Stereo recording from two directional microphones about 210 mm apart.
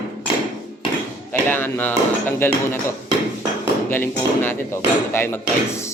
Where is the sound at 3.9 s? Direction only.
10° left (ahead or behind).